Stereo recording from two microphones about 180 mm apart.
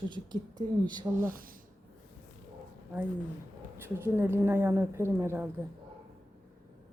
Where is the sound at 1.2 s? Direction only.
50° right (ahead or behind).